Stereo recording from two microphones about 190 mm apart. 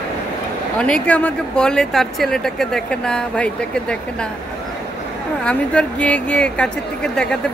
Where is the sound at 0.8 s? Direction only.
5° left (ahead or behind).